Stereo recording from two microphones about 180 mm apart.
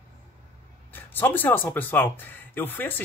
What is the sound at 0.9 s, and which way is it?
Speech, 10° left (ahead or behind).